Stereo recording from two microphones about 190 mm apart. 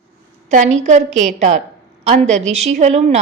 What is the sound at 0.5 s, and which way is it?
Speech, 40° right (ahead or behind).